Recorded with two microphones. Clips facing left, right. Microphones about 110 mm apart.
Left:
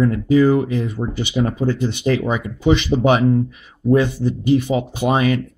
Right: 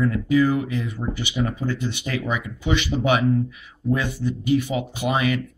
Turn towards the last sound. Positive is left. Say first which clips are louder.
# left 5 dB
turn(degrees=35)  # may be behind; listen again after turning